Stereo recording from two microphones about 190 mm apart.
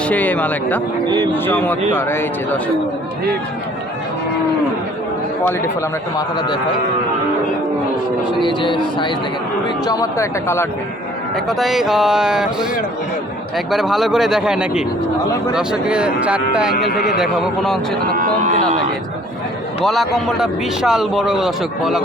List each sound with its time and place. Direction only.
0.0 s speech: 10° left (ahead or behind)
1.0 s a man's voice: 20° right (ahead or behind)
1.3 s speech: 10° left (ahead or behind)
5.4 s speech: 10° left (ahead or behind)
6.1 s speech: 25° left (ahead or behind)
8.3 s speech: 25° left (ahead or behind)
11.4 s a man's voice: centre (ahead or behind)
13.7 s a man's voice: centre (ahead or behind)
18.1 s speech: 45° right (ahead or behind)
19.8 s a man's voice: centre (ahead or behind)